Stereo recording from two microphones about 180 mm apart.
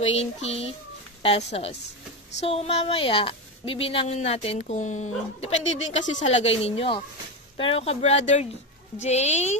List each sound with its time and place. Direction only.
0.0 s a woman's voice: 35° left (ahead or behind)